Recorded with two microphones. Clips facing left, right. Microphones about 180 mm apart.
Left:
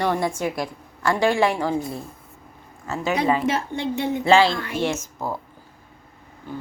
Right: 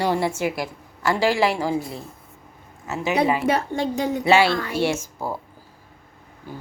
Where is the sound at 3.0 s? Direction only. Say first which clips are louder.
Right 1 dB; 5° right (ahead or behind).